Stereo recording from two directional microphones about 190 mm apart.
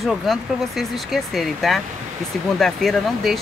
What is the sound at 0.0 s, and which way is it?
Speech, centre (ahead or behind).